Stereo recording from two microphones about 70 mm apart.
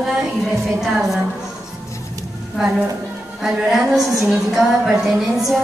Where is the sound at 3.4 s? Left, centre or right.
Centre.